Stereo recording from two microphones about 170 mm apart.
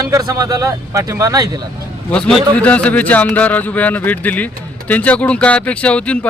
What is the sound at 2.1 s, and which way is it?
A man's voice, 5° left (ahead or behind).